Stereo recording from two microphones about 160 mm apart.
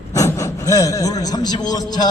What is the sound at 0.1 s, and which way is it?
A man's voice, 20° left (ahead or behind).